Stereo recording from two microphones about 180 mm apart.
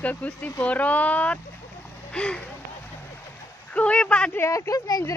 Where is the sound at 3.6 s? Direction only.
5° left (ahead or behind).